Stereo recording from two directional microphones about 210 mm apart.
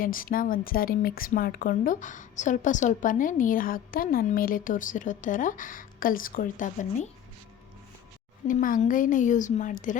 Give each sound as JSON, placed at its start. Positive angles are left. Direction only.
{"t": 0.0, "sound": "speech", "side_deg": 40}
{"t": 8.4, "sound": "speech", "side_deg": 40}